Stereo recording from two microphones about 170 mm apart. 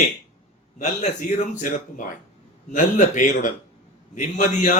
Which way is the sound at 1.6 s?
50° left (ahead or behind).